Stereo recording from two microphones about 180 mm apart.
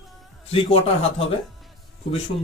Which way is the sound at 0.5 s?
30° left (ahead or behind).